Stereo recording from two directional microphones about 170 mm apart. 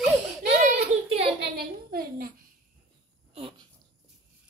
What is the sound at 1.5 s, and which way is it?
Speech, 60° right (ahead or behind).